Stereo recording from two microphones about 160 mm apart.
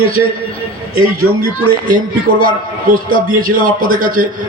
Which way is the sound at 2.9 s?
60° right (ahead or behind).